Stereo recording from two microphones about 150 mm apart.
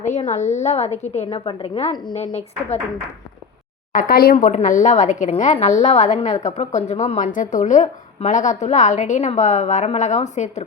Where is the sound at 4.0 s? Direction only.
80° left.